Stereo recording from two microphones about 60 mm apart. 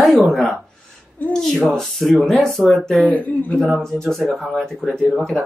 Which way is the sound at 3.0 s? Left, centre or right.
Left.